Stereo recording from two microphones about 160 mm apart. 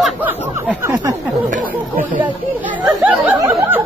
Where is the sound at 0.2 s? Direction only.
10° right (ahead or behind).